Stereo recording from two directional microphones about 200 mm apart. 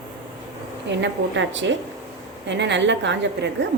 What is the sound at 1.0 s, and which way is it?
A woman's voice, 65° right (ahead or behind).